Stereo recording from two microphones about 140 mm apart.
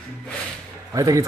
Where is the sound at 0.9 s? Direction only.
25° right (ahead or behind).